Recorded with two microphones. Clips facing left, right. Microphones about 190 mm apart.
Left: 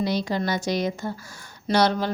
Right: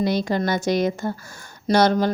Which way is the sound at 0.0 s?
50° right (ahead or behind).